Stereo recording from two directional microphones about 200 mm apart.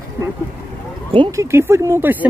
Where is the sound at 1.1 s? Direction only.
20° right (ahead or behind).